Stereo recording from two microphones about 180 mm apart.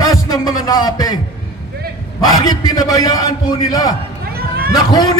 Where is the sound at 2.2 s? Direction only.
20° left (ahead or behind).